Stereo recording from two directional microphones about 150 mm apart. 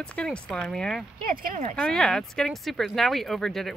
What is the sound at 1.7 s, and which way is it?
Speech, 5° left (ahead or behind).